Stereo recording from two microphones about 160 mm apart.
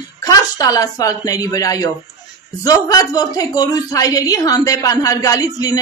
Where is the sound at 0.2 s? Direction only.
20° left (ahead or behind).